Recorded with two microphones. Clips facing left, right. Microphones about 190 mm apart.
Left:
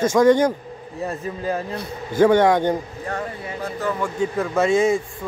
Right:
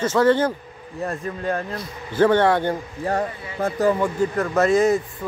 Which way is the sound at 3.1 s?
40° right (ahead or behind).